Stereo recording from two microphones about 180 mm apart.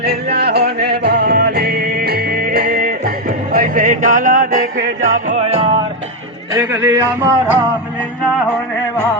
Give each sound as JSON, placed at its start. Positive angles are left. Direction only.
{"t": 0.0, "sound": "music", "side_deg": -65}
{"t": 6.5, "sound": "speech", "side_deg": -15}